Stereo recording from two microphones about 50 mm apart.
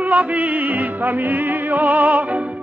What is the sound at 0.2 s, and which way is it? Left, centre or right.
Music, right.